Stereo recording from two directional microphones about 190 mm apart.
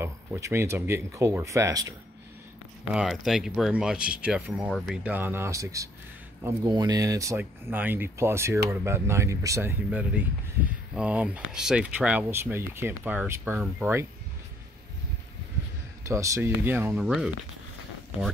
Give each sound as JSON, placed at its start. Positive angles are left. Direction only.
{"t": 0.0, "sound": "speech", "side_deg": -15}
{"t": 2.9, "sound": "speech", "side_deg": -5}
{"t": 16.1, "sound": "speech", "side_deg": -15}